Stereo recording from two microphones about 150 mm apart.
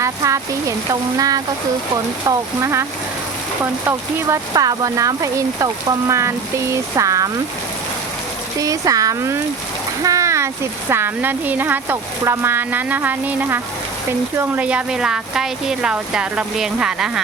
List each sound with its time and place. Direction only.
0.0 s speech: 20° right (ahead or behind)
4.5 s speech: 25° right (ahead or behind)
8.5 s speech: 25° right (ahead or behind); by 17.1 s 5° right (ahead or behind)